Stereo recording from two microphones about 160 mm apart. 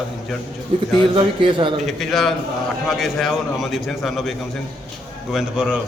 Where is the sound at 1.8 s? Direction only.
Centre (ahead or behind).